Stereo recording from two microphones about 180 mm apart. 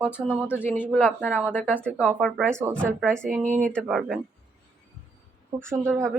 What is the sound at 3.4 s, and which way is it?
Speech, 45° right (ahead or behind).